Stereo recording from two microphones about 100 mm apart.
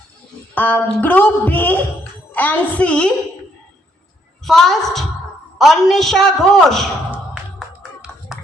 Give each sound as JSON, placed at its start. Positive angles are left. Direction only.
{"t": 0.5, "sound": "a woman's voice", "side_deg": 20}
{"t": 4.4, "sound": "a man's voice", "side_deg": 5}
{"t": 7.8, "sound": "a sound", "side_deg": -5}